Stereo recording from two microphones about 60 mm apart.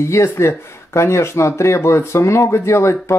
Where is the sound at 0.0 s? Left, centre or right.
Left.